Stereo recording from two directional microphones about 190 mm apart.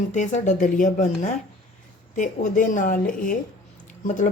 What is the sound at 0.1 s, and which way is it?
A woman's voice, 40° left (ahead or behind).